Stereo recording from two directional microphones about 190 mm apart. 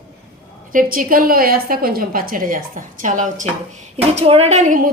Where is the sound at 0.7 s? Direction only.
45° right (ahead or behind).